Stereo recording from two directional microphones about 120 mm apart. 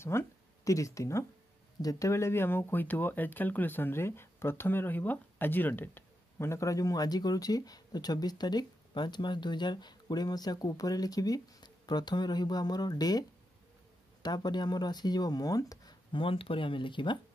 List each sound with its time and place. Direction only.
0.0 s speech: 20° left (ahead or behind)
14.2 s speech: 35° left (ahead or behind)